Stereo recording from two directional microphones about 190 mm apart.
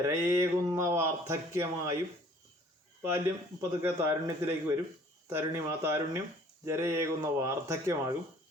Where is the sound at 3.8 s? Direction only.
10° right (ahead or behind).